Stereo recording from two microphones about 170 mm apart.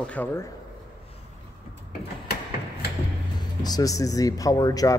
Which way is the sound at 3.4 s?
25° left (ahead or behind).